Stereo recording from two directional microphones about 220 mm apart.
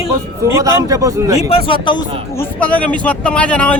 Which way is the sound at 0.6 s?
15° right (ahead or behind).